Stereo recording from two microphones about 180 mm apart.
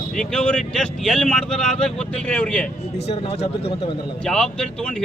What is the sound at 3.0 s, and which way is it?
Speech, 35° left (ahead or behind).